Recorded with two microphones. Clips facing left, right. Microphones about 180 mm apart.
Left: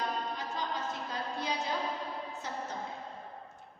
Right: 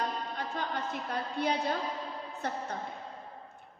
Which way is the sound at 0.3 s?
60° right (ahead or behind).